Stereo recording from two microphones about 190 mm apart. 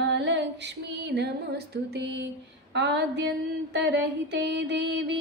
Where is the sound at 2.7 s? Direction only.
65° right (ahead or behind).